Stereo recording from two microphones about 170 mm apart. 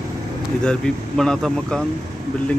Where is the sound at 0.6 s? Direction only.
5° left (ahead or behind).